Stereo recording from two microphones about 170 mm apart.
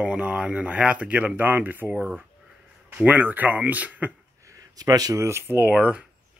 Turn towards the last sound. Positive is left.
turn(degrees=-5)  # may be behind; listen again after turning